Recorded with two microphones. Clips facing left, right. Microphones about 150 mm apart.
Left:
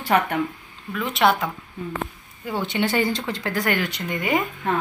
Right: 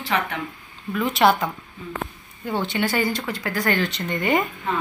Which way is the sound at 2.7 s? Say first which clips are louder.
Left 3 dB; 25° left (ahead or behind).